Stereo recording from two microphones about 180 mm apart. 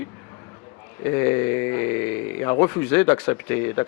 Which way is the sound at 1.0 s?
15° left (ahead or behind).